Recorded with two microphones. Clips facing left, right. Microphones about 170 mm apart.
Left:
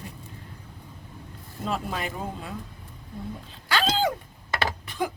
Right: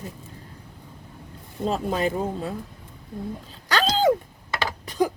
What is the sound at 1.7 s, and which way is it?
Speech, 40° right (ahead or behind).